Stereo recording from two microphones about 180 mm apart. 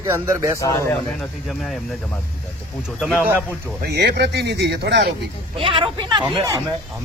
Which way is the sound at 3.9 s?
65° right (ahead or behind).